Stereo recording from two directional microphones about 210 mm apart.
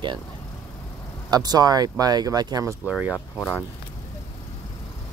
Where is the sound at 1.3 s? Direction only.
20° right (ahead or behind).